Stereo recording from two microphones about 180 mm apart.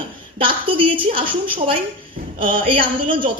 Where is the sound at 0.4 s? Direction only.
30° right (ahead or behind).